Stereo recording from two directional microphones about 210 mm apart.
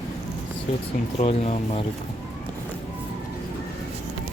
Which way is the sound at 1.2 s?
30° left (ahead or behind).